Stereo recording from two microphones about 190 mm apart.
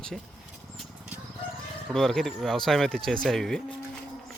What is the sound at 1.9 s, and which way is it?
Speech, centre (ahead or behind).